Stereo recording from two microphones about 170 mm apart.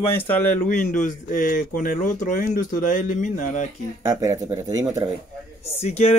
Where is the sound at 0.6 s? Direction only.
45° left (ahead or behind).